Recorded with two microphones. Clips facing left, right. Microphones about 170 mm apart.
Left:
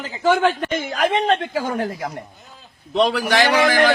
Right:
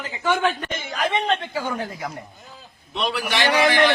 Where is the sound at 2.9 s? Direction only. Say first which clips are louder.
Left 7 dB; 90° left.